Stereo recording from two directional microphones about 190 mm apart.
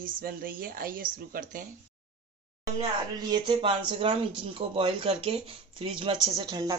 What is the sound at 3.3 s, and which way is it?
Speech, 25° right (ahead or behind).